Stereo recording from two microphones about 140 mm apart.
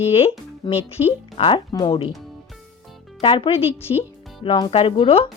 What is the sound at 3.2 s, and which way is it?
Speech, 35° left (ahead or behind).